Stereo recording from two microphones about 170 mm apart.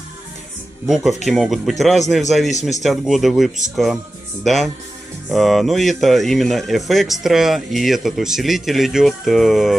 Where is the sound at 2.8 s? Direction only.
Centre (ahead or behind).